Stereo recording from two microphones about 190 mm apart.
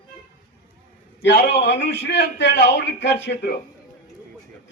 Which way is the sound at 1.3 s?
65° left (ahead or behind).